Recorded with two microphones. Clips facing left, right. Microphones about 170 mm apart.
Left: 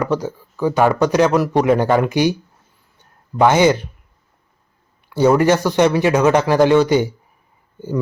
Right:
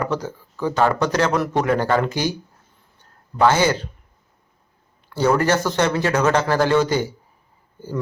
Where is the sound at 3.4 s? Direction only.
15° left (ahead or behind).